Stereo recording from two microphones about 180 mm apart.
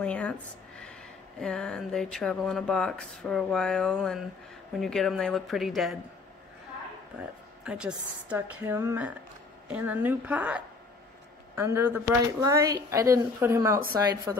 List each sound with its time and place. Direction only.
0.0 s speech: 5° left (ahead or behind)
7.2 s a woman's voice: 5° right (ahead or behind)